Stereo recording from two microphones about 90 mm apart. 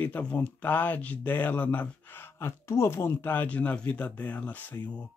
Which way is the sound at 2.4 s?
30° left (ahead or behind).